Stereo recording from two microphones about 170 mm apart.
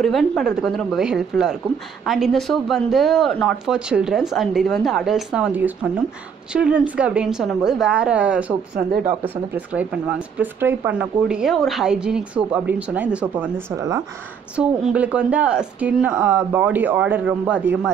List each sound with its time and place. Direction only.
0.4 s speech: 5° right (ahead or behind)
8.7 s speech: 60° right (ahead or behind)
9.8 s speech: 10° right (ahead or behind)
14.8 s speech: 5° right (ahead or behind)